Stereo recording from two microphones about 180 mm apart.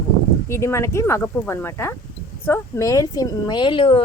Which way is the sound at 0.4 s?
15° left (ahead or behind).